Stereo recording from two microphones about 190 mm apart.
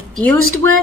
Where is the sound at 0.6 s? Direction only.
90° right.